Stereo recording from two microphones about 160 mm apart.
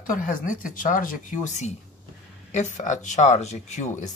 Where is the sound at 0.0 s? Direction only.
55° left (ahead or behind).